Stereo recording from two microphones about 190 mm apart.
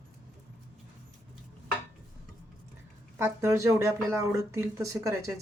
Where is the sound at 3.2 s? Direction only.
15° right (ahead or behind).